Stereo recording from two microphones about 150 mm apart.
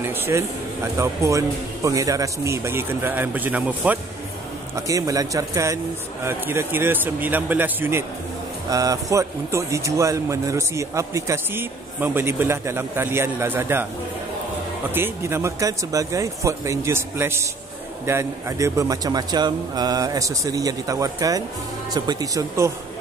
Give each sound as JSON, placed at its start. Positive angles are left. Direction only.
{"t": 0.0, "sound": "a man's voice", "side_deg": -15}
{"t": 4.7, "sound": "a man's voice", "side_deg": -20}
{"t": 15.0, "sound": "speech", "side_deg": -15}